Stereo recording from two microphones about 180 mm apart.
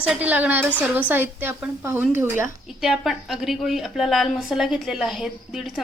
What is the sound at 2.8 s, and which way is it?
A woman's voice, centre (ahead or behind).